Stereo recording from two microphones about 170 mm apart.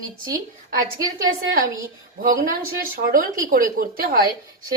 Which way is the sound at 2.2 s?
55° right (ahead or behind).